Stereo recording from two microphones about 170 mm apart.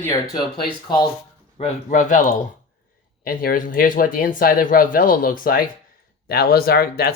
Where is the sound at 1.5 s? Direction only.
45° left (ahead or behind).